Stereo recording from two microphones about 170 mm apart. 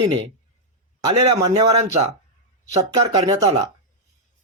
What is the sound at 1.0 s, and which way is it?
Speech, 25° right (ahead or behind).